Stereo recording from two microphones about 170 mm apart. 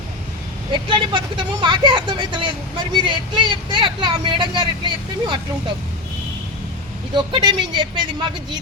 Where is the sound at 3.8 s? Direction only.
25° right (ahead or behind).